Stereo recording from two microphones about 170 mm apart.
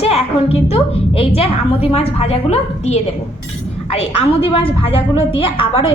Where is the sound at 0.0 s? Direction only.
35° left (ahead or behind).